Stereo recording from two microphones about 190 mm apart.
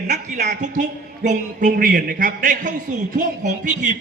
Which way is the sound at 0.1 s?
40° right (ahead or behind).